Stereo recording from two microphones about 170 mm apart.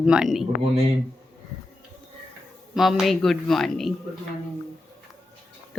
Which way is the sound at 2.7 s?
Centre (ahead or behind).